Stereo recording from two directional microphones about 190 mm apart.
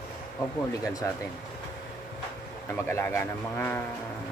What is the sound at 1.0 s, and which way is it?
Speech, 15° left (ahead or behind).